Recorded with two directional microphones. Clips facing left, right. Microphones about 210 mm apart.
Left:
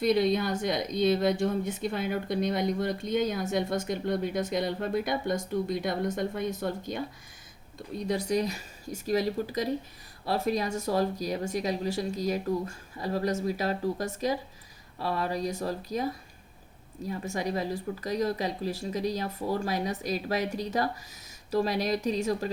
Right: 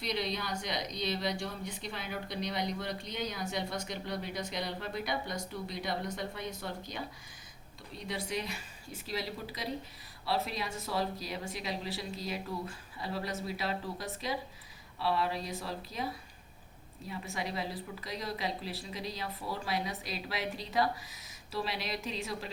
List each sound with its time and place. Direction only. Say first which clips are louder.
0.0 s speech: left 11 dB; 50° left (ahead or behind)
17.1 s speech: left 7 dB; 45° left (ahead or behind)